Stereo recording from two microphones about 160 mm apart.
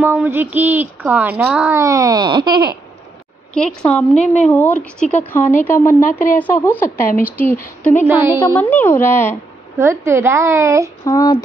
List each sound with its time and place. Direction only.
0.0 s speech: 10° right (ahead or behind)
1.8 s speech: 20° right (ahead or behind)
3.5 s a woman's voice: 5° left (ahead or behind)
9.8 s speech: 15° right (ahead or behind)
11.1 s speech: 20° left (ahead or behind)